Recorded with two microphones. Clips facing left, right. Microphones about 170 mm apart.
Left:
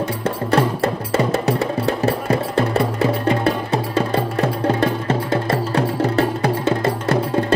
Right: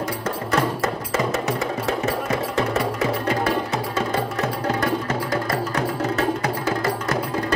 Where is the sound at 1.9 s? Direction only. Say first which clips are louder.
Left 4 dB; 35° left (ahead or behind).